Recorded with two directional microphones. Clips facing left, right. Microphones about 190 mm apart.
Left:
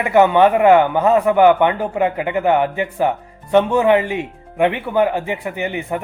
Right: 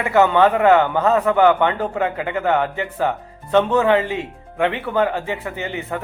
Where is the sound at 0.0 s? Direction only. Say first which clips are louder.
Left 2 dB; 15° left (ahead or behind).